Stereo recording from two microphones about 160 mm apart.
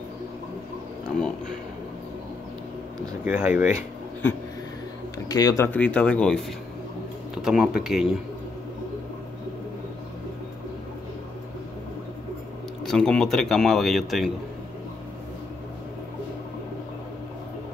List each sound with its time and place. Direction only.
3.3 s speech: 10° right (ahead or behind)
5.3 s speech: 20° left (ahead or behind)
5.7 s speech: 10° left (ahead or behind)
7.4 s speech: 5° right (ahead or behind)
12.8 s speech: 5° left (ahead or behind)